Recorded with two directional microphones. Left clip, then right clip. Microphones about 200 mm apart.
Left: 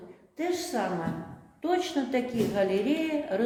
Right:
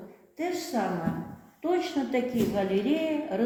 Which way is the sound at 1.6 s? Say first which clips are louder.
Even; 25° left (ahead or behind).